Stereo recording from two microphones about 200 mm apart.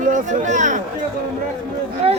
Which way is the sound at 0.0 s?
40° right (ahead or behind).